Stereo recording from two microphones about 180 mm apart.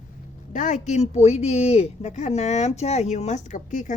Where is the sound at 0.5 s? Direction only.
45° left (ahead or behind).